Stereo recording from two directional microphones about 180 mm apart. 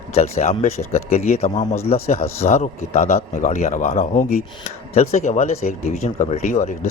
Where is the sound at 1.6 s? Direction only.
15° left (ahead or behind).